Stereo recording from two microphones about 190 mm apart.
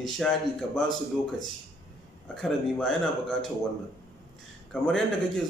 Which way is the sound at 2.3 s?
Centre (ahead or behind).